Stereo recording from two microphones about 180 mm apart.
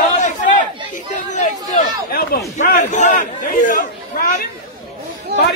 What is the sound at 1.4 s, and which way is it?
Speech, 50° left (ahead or behind).